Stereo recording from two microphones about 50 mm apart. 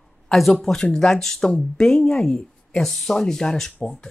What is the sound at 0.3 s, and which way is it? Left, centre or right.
Speech, centre.